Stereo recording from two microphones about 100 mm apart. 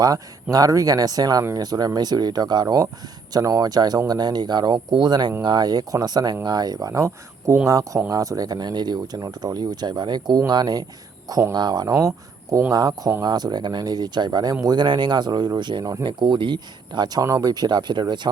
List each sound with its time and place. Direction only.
0.5 s speech: 35° right (ahead or behind)
13.2 s speech: 45° right (ahead or behind)